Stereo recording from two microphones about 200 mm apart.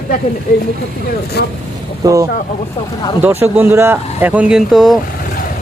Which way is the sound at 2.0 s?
15° right (ahead or behind).